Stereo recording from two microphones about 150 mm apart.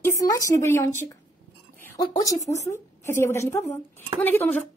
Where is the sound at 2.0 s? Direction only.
25° left (ahead or behind).